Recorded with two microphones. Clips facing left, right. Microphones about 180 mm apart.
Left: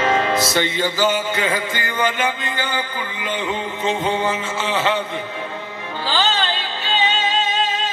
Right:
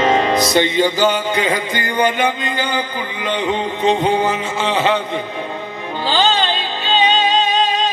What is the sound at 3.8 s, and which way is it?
Music, 20° right (ahead or behind).